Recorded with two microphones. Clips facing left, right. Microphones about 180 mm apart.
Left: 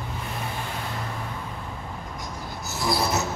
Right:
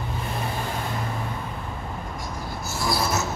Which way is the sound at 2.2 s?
20° left (ahead or behind).